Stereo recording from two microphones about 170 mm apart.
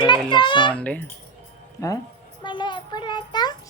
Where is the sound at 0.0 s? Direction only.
25° left (ahead or behind).